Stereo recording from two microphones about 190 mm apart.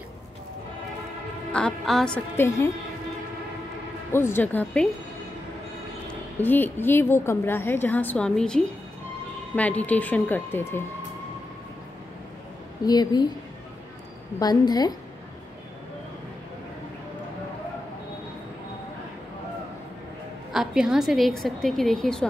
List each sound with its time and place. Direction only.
1.5 s a woman's voice: 5° left (ahead or behind)
4.1 s a woman's voice: 10° left (ahead or behind)
6.3 s a woman's voice: 10° left (ahead or behind)
12.8 s a woman's voice: 20° left (ahead or behind)
14.4 s a woman's voice: 20° left (ahead or behind)
20.5 s a woman's voice: 5° right (ahead or behind)